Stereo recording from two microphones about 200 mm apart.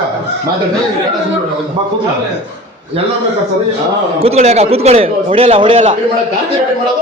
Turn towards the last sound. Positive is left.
turn(degrees=-25)  # may be behind; listen again after turning